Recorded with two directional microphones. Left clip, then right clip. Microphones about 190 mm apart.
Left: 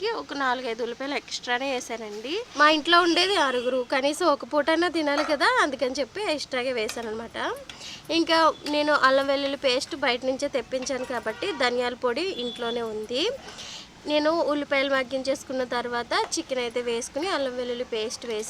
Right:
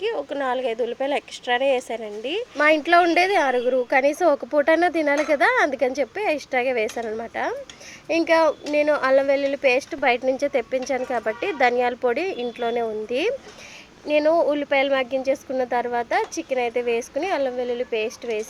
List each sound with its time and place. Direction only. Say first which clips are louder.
0.1 s a woman's voice: right 2 dB; 5° left (ahead or behind)